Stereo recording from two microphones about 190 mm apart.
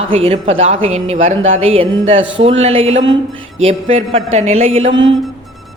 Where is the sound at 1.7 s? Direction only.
30° right (ahead or behind).